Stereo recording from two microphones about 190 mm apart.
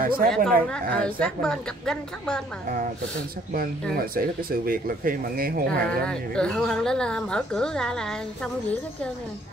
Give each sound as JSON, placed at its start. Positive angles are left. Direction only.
{"t": 0.0, "sound": "speech", "side_deg": -50}
{"t": 0.3, "sound": "a woman's voice", "side_deg": 5}
{"t": 3.9, "sound": "speech", "side_deg": -50}
{"t": 5.7, "sound": "a woman's voice", "side_deg": 5}